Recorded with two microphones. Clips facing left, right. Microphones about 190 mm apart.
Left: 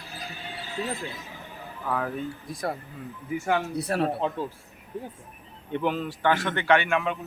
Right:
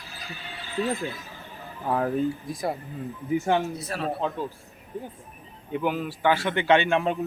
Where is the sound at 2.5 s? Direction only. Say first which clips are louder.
Right 2 dB; centre (ahead or behind).